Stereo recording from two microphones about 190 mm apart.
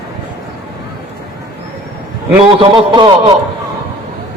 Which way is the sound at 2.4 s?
25° right (ahead or behind).